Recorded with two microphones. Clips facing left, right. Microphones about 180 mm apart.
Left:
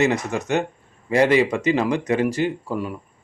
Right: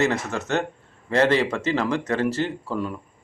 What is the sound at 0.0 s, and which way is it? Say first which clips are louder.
Speech: left 3 dB; 15° left (ahead or behind).